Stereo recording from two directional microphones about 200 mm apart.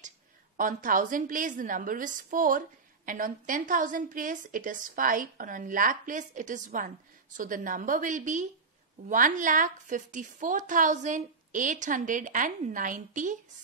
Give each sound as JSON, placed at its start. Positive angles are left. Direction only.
{"t": 0.6, "sound": "a woman's voice", "side_deg": -40}